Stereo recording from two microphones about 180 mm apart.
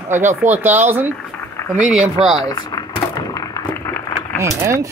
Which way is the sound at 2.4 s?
20° left (ahead or behind).